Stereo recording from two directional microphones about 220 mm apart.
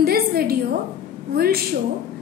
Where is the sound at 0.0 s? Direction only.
45° right (ahead or behind).